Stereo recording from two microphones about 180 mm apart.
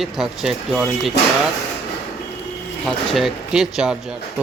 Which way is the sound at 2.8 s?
Centre (ahead or behind).